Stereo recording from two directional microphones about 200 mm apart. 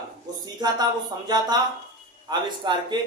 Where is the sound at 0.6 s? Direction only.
20° right (ahead or behind).